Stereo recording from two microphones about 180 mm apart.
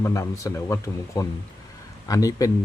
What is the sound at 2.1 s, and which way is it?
Speech, 20° left (ahead or behind).